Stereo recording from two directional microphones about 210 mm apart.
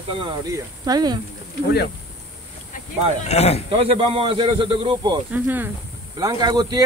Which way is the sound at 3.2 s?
30° left (ahead or behind).